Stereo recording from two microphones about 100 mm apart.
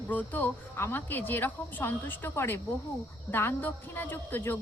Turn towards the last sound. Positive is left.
turn(degrees=20)  # may be behind; listen again after turning